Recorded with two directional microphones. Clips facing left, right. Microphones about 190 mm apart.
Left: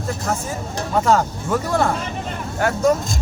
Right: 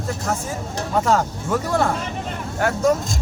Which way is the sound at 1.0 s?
5° right (ahead or behind).